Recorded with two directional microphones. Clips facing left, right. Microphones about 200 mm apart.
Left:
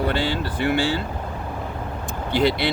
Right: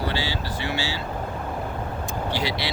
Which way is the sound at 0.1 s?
55° left (ahead or behind).